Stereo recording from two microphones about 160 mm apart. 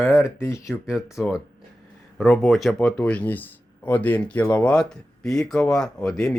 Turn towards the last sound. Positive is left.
turn(degrees=5)  # may be behind; listen again after turning